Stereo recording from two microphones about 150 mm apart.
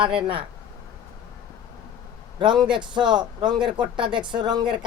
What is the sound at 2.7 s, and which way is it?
Speech, 30° right (ahead or behind).